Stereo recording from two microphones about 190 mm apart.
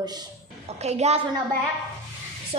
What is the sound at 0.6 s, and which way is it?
Speech, 35° right (ahead or behind).